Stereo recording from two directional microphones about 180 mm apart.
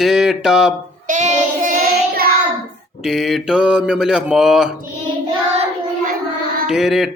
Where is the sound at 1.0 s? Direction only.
45° right (ahead or behind).